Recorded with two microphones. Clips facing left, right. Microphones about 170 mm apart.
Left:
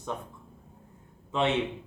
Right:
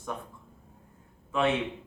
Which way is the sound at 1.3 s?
25° left (ahead or behind).